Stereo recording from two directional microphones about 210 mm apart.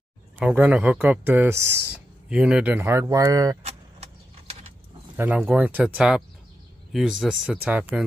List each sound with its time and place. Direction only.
0.4 s speech: 5° right (ahead or behind)
3.6 s vehicle: 30° right (ahead or behind)
5.1 s speech: 5° right (ahead or behind)